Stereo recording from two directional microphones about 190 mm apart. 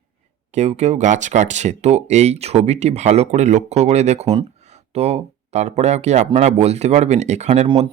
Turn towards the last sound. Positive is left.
turn(degrees=-35)  # may be behind; listen again after turning